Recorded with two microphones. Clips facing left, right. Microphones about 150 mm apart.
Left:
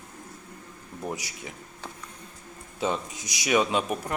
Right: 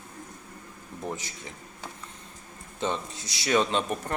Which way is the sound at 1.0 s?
10° left (ahead or behind).